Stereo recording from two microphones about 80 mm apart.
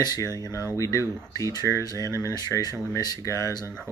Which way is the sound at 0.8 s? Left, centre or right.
Left.